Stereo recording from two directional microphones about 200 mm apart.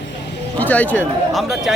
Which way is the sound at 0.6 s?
10° left (ahead or behind).